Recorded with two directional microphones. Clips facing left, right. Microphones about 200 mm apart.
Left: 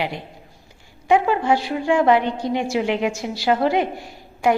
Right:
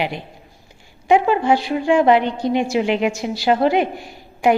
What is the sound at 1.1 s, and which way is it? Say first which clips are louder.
A woman's voice: right 2 dB; 20° right (ahead or behind).